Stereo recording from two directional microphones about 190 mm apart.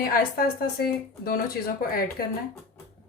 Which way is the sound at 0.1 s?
55° left (ahead or behind).